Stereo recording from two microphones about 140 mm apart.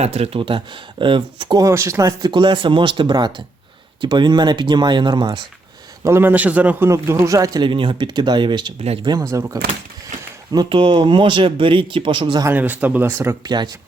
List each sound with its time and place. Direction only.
0.0 s speech: 50° right (ahead or behind)
1.6 s speech: 20° right (ahead or behind)
6.1 s speech: 15° right (ahead or behind); by 8.7 s 35° right (ahead or behind)
9.3 s speech: 20° right (ahead or behind)
10.5 s speech: 35° right (ahead or behind)
12.5 s speech: 15° right (ahead or behind)
13.4 s speech: 30° right (ahead or behind)